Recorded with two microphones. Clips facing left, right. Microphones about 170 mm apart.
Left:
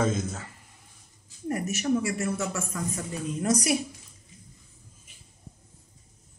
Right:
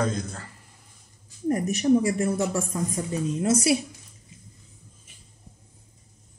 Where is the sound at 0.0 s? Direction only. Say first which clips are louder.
Left 1 dB; 5° left (ahead or behind).